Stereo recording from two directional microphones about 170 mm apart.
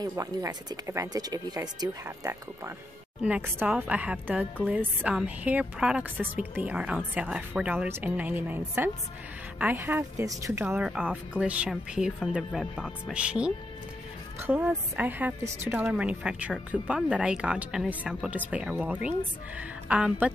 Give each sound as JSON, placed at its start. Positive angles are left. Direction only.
{"t": 0.0, "sound": "a woman's voice", "side_deg": -20}